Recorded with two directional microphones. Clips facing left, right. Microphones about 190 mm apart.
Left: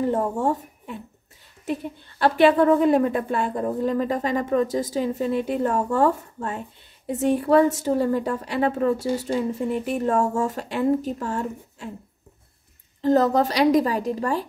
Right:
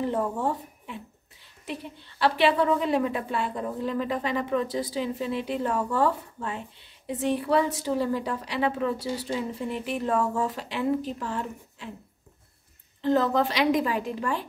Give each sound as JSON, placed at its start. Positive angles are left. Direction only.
{"t": 0.0, "sound": "a woman's voice", "side_deg": 45}
{"t": 13.0, "sound": "a woman's voice", "side_deg": 40}